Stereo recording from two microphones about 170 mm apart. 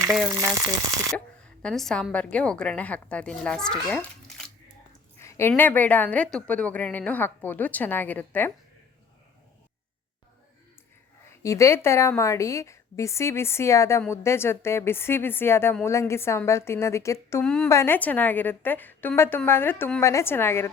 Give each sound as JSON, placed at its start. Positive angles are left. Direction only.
{"t": 0.0, "sound": "frying", "side_deg": -15}
{"t": 1.6, "sound": "a woman's voice", "side_deg": 5}
{"t": 5.2, "sound": "a woman's voice", "side_deg": 15}
{"t": 11.3, "sound": "a woman's voice", "side_deg": 15}
{"t": 17.4, "sound": "a woman's voice", "side_deg": 5}
{"t": 17.7, "sound": "a woman's voice", "side_deg": 15}